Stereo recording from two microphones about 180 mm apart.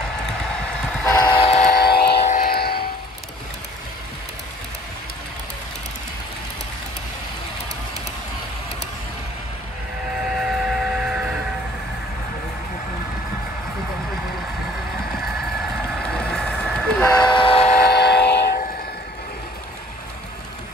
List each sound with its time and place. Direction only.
1.2 s train: 30° left (ahead or behind)
1.8 s vehicle: 60° left (ahead or behind)
10.2 s civil defense siren: 5° right (ahead or behind)
16.0 s vehicle: 5° left (ahead or behind)
17.1 s train: 25° left (ahead or behind)
17.8 s train: 65° left (ahead or behind)